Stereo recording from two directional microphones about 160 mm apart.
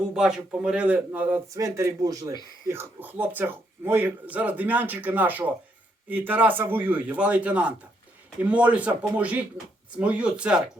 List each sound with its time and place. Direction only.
0.1 s speech: 5° right (ahead or behind)
1.6 s speech: 20° right (ahead or behind)